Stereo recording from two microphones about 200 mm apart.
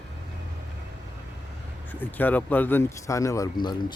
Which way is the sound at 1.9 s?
10° left (ahead or behind).